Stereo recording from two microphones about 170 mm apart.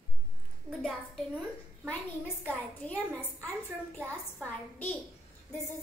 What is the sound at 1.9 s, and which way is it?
A woman's voice, 10° left (ahead or behind).